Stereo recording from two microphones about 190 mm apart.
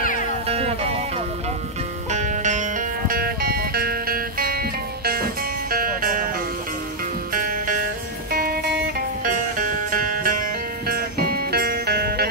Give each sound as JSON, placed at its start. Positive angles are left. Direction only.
{"t": 0.0, "sound": "music", "side_deg": 45}
{"t": 2.0, "sound": "music", "side_deg": -40}
{"t": 7.3, "sound": "music", "side_deg": -45}